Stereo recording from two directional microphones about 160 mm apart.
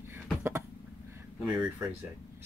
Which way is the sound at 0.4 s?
15° right (ahead or behind).